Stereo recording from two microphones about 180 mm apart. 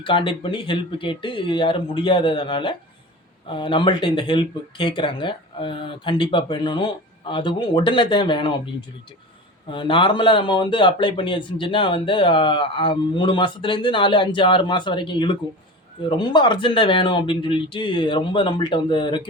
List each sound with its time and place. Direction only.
0.0 s a man's voice: 25° left (ahead or behind)
9.6 s a man's voice: 25° left (ahead or behind)